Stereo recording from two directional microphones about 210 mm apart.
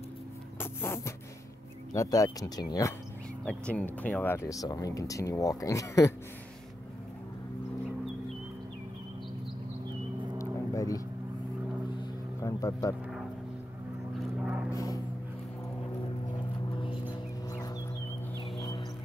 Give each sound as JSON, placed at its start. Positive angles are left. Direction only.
{"t": 0.6, "sound": "speech", "side_deg": 10}
{"t": 3.4, "sound": "speech", "side_deg": 5}
{"t": 10.3, "sound": "a sound", "side_deg": 15}
{"t": 11.9, "sound": "vehicle", "side_deg": 20}
{"t": 14.1, "sound": "vehicle", "side_deg": -5}
{"t": 14.7, "sound": "a sound", "side_deg": 15}